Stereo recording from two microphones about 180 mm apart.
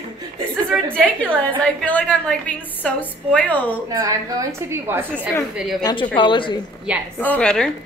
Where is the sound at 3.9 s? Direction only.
20° right (ahead or behind).